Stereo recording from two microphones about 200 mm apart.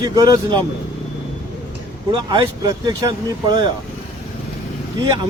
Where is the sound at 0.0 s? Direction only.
20° right (ahead or behind).